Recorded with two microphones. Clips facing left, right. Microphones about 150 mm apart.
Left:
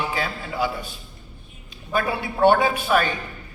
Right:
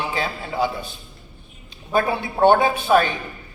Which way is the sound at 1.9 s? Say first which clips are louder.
Right 3 dB; 25° right (ahead or behind).